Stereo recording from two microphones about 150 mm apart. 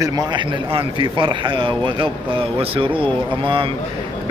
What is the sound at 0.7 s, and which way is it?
A man's voice, 35° right (ahead or behind).